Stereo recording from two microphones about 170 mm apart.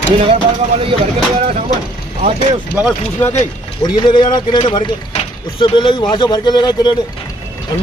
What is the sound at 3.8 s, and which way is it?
Speech, 25° left (ahead or behind).